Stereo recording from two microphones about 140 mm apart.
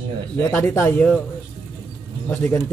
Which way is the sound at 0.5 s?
15° left (ahead or behind).